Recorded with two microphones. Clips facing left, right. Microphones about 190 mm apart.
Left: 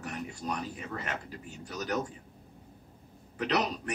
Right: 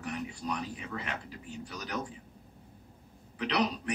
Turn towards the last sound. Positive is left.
turn(degrees=45)  # may be behind; listen again after turning